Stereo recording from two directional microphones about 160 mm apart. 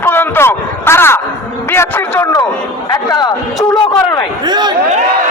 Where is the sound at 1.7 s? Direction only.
15° left (ahead or behind).